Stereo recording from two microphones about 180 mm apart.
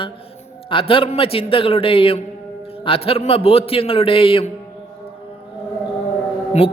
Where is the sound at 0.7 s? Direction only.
30° left (ahead or behind).